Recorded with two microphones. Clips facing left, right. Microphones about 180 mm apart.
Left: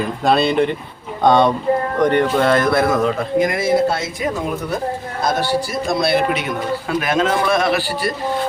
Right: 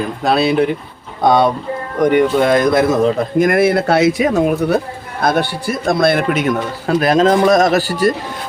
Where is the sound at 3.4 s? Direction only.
55° right (ahead or behind); by 4.2 s 75° right (ahead or behind).